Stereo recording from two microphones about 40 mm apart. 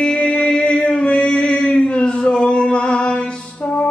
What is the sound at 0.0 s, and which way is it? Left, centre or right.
Music, left.